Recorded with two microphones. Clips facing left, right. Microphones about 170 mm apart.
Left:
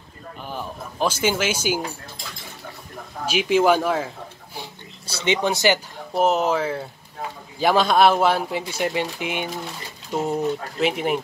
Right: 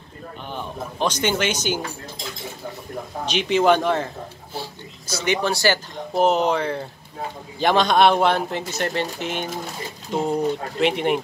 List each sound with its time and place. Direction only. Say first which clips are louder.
0.5 s speech: right 1 dB; 5° left (ahead or behind)
3.3 s speech: even; 5° left (ahead or behind)
5.2 s speech: left 1 dB; 20° left (ahead or behind)
6.1 s speech: right 1 dB; centre (ahead or behind)